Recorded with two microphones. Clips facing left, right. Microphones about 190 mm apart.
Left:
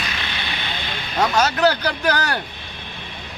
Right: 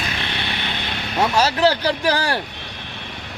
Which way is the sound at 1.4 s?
30° right (ahead or behind).